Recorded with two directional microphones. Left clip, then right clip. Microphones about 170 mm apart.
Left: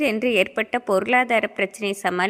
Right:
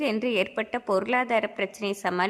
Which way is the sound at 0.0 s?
20° left (ahead or behind).